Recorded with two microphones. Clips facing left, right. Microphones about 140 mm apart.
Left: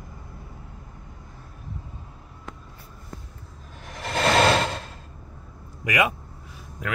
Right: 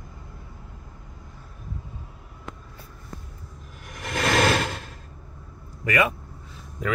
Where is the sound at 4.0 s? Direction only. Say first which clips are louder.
Left 2 dB; 30° left (ahead or behind).